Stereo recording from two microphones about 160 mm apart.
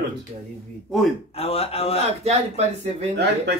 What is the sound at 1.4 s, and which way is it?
Speech, 40° left (ahead or behind).